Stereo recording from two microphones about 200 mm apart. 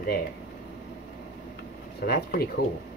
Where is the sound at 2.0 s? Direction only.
50° left (ahead or behind).